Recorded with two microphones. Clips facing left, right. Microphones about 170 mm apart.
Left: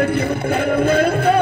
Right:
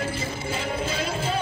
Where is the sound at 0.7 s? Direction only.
60° left (ahead or behind).